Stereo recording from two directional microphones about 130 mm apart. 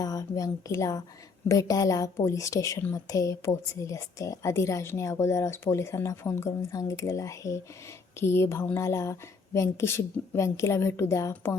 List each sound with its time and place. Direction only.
0.0 s a woman's voice: 25° left (ahead or behind)